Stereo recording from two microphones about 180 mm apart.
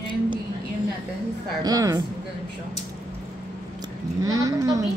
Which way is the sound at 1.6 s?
20° right (ahead or behind).